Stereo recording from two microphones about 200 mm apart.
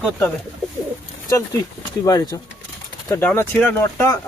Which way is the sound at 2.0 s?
15° left (ahead or behind).